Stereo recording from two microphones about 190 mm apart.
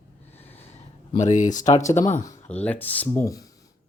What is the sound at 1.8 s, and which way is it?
Speech, 15° left (ahead or behind).